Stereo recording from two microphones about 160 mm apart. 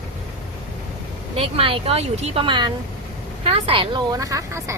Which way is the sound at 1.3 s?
35° right (ahead or behind).